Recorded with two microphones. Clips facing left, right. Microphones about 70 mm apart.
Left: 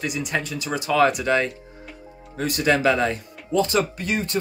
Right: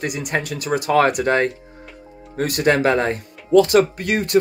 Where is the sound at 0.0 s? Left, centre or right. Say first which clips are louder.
Right 2 dB; right.